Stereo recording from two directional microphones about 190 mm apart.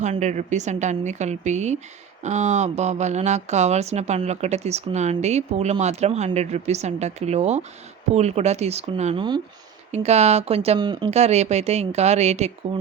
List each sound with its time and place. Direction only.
0.0 s speech: 40° right (ahead or behind)